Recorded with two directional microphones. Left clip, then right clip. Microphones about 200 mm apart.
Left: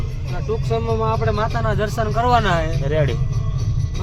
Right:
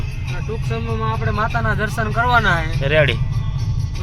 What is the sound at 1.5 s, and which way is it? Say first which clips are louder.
Speech: right 1 dB; 40° left (ahead or behind).